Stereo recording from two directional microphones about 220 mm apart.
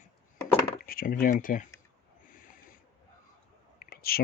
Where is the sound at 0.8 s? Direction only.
40° left (ahead or behind).